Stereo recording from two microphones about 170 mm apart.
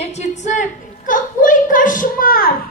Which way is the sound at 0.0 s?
40° left (ahead or behind).